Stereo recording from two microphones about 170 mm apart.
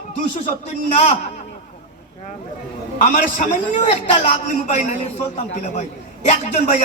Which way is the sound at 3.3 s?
45° left (ahead or behind).